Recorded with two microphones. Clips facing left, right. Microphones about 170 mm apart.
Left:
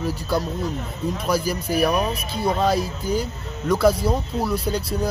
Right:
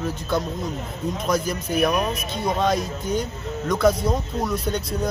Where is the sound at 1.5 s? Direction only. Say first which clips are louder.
Left 1 dB; 35° left (ahead or behind).